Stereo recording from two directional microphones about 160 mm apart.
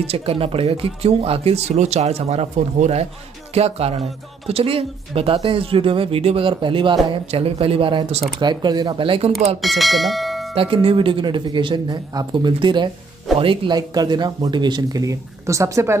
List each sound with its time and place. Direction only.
0.0 s speech: 40° right (ahead or behind)
9.6 s speech: centre (ahead or behind)
10.5 s speech: 35° right (ahead or behind); by 16.0 s 20° right (ahead or behind)